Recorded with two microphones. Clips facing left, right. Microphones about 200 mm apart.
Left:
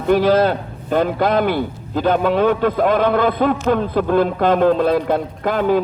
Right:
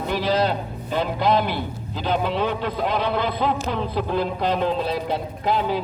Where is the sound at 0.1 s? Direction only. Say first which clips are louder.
Left 9 dB; 50° left (ahead or behind).